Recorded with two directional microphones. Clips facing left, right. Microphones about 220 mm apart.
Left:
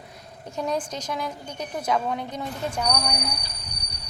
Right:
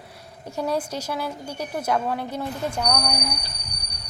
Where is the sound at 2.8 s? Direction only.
5° left (ahead or behind).